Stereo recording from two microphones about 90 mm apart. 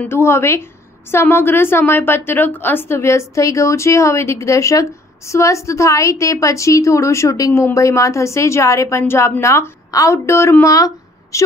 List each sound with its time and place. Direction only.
0.1 s a woman's voice: 30° left (ahead or behind)